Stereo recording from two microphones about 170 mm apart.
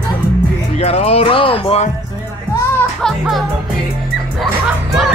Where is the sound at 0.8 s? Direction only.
35° left (ahead or behind).